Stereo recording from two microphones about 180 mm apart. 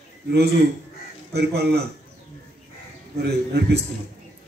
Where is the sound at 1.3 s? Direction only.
65° right (ahead or behind).